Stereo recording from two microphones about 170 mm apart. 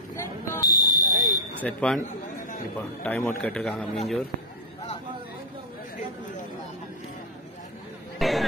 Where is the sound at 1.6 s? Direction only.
5° left (ahead or behind).